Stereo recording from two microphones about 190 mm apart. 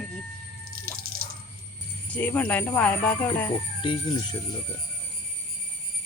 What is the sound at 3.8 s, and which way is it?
Speech, 25° left (ahead or behind).